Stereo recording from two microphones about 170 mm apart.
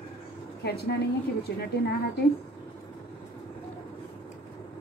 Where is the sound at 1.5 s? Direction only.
80° left.